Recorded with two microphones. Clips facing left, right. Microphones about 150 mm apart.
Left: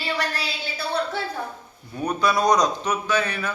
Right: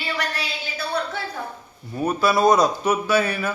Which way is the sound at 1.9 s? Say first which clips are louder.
Right 2 dB; 5° right (ahead or behind).